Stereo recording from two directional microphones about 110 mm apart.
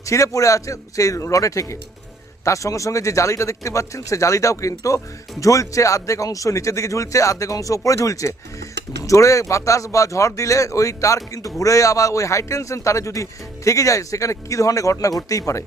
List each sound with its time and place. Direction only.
0.0 s speech: 30° left (ahead or behind)